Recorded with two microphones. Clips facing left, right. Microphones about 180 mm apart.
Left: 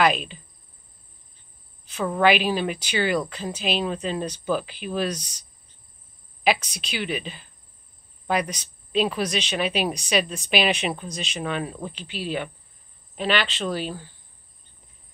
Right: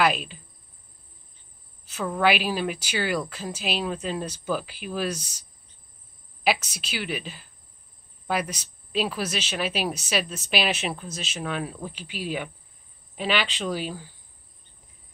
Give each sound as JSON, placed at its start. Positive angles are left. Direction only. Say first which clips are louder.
{"t": 0.0, "sound": "speech", "louder": "left 2 dB", "side_deg": -5}
{"t": 2.0, "sound": "a woman's voice", "louder": "left 3 dB", "side_deg": -5}
{"t": 6.4, "sound": "a woman's voice", "louder": "left 2 dB", "side_deg": -5}